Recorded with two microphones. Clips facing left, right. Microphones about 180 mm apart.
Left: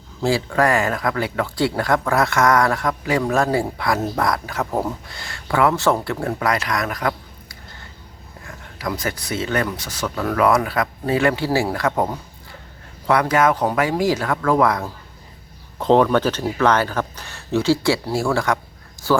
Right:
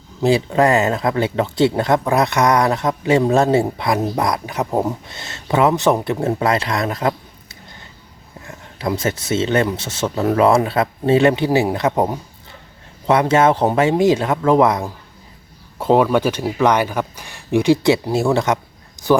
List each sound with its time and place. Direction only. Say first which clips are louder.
0.2 s speech: right 4 dB; 20° right (ahead or behind)
15.8 s speech: right 1 dB; 10° right (ahead or behind)